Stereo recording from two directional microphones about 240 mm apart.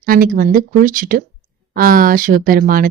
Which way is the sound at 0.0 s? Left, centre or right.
Right.